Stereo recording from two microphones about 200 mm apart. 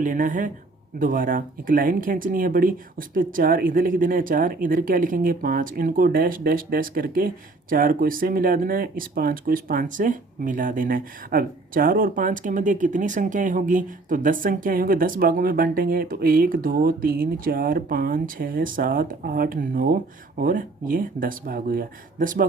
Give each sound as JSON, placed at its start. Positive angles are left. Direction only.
{"t": 0.0, "sound": "speech", "side_deg": -40}